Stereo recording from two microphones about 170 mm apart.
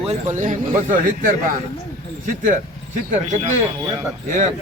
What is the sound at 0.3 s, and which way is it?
A man's voice, 50° right (ahead or behind).